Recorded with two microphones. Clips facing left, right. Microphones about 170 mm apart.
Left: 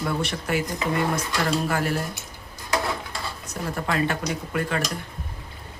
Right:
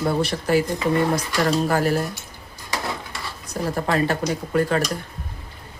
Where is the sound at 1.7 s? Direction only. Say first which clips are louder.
Right 5 dB; 40° right (ahead or behind).